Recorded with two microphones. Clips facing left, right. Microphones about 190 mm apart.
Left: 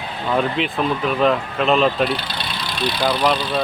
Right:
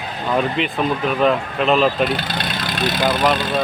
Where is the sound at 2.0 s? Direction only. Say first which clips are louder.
Right 2 dB; 45° right (ahead or behind).